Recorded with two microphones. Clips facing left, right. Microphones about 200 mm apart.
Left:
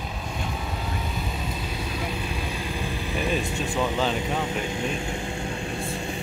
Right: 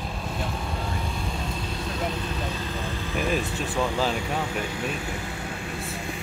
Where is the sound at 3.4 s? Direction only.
15° left (ahead or behind).